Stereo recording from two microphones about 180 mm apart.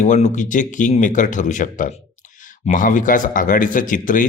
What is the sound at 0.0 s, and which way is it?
Speech, 40° left (ahead or behind).